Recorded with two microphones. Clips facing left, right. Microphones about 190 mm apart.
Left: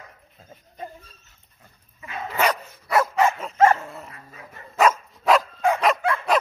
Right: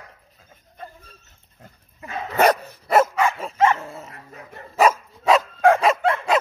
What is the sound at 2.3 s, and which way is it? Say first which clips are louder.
Dog: right 6 dB; 45° right (ahead or behind).